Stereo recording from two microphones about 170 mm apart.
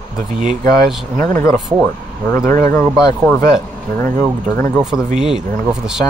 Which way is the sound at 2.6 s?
15° left (ahead or behind).